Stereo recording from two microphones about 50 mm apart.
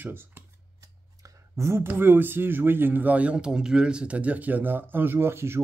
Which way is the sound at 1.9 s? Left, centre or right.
Right.